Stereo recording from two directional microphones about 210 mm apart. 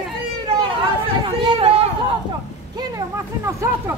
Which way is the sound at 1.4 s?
25° right (ahead or behind).